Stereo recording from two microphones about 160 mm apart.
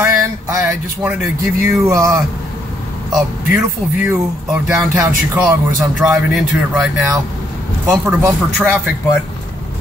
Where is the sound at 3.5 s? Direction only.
5° right (ahead or behind).